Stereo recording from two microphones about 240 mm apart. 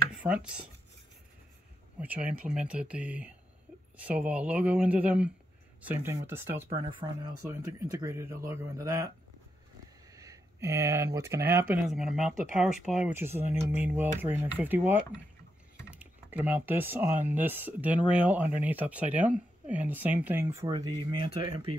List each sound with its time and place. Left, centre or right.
0.2 s speech: centre
2.0 s speech: centre
10.1 s speech: centre